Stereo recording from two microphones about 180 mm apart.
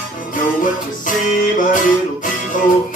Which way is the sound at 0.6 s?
45° left (ahead or behind).